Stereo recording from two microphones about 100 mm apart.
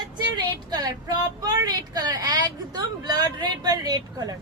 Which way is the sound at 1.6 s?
45° right (ahead or behind).